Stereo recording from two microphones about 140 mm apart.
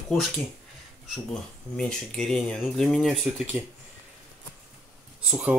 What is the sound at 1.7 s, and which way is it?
Speech, 5° left (ahead or behind).